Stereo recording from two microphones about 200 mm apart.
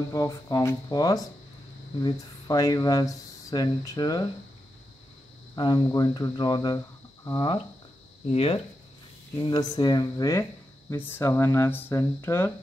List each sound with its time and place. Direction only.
0.1 s speech: 15° left (ahead or behind)
5.6 s speech: 20° left (ahead or behind)